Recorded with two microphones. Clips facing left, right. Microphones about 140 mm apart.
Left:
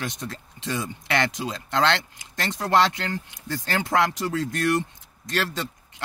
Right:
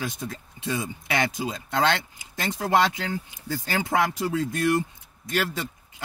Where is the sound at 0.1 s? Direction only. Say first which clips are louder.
Even; 90° left.